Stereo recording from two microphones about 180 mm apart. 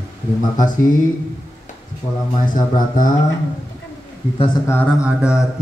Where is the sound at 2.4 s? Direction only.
50° left (ahead or behind).